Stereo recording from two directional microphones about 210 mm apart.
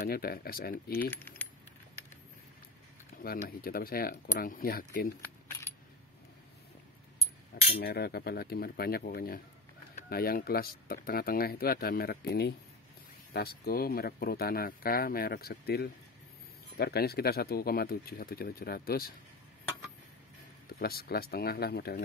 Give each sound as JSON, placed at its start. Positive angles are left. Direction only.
{"t": 0.0, "sound": "speech", "side_deg": 45}
{"t": 1.1, "sound": "keys jangling", "side_deg": 10}
{"t": 3.2, "sound": "speech", "side_deg": 45}
{"t": 7.8, "sound": "speech", "side_deg": 50}
{"t": 20.8, "sound": "speech", "side_deg": 45}